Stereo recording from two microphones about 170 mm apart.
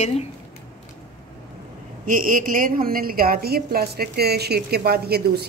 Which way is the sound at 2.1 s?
50° right (ahead or behind).